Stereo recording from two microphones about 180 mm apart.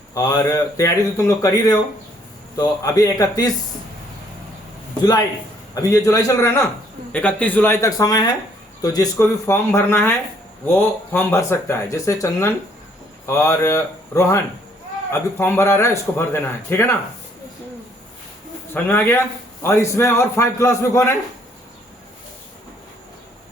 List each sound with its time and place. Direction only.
0.1 s speech: 20° left (ahead or behind)
5.7 s a man's voice: 20° left (ahead or behind)
18.7 s a man's voice: 10° left (ahead or behind)